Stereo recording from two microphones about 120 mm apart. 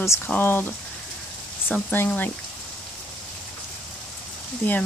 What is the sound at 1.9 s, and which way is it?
Speech, 15° left (ahead or behind).